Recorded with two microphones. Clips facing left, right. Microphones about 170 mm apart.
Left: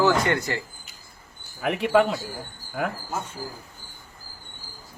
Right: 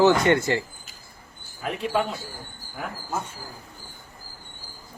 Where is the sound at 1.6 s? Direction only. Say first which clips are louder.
Left 5 dB; 80° left.